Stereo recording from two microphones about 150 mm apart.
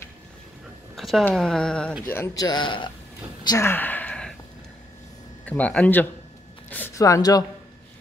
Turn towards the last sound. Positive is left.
turn(degrees=25)  # may be behind; listen again after turning